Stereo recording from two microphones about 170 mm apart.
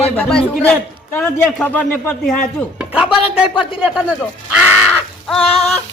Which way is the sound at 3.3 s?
5° right (ahead or behind).